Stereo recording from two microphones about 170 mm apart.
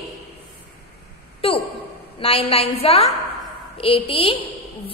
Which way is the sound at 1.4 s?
35° left (ahead or behind).